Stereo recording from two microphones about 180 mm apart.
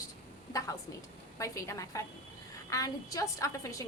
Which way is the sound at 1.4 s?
15° left (ahead or behind).